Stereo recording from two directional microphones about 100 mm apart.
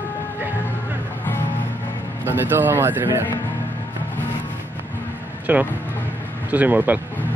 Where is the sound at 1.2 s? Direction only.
20° left (ahead or behind).